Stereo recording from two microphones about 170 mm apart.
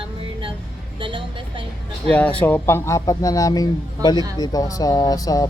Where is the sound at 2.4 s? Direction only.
10° left (ahead or behind).